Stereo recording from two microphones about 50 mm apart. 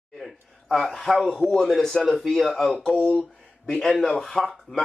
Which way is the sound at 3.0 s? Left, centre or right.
Centre.